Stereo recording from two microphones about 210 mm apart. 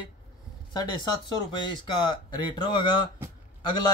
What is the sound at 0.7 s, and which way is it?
A man's voice, 20° left (ahead or behind).